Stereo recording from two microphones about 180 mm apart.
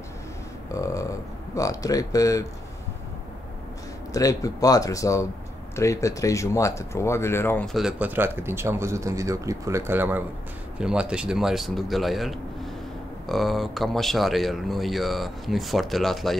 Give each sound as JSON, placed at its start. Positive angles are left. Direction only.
{"t": 0.7, "sound": "a sound", "side_deg": 20}
{"t": 1.5, "sound": "speech", "side_deg": 20}
{"t": 4.1, "sound": "speech", "side_deg": 20}